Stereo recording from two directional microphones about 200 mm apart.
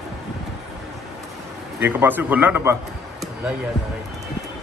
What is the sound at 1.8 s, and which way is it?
Speech, 10° right (ahead or behind).